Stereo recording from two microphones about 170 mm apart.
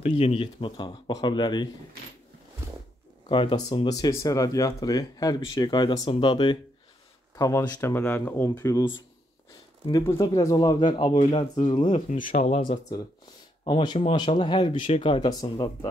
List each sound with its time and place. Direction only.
0.0 s speech: 35° left (ahead or behind)
3.3 s speech: 30° left (ahead or behind)
7.3 s speech: 20° left (ahead or behind)
9.8 s speech: 20° left (ahead or behind)
12.3 s speech: 40° left (ahead or behind)